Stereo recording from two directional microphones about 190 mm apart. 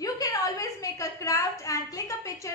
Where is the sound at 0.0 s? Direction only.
20° left (ahead or behind).